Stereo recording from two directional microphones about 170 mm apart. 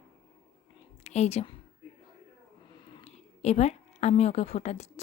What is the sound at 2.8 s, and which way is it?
A woman's voice, 30° left (ahead or behind).